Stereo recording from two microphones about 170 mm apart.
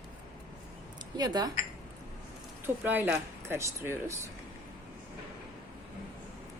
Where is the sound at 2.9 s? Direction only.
10° right (ahead or behind).